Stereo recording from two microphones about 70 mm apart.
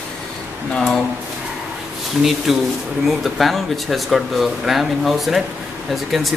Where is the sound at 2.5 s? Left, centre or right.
Centre.